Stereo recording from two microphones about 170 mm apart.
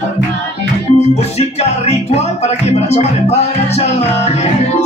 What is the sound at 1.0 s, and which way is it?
Music, 40° left (ahead or behind).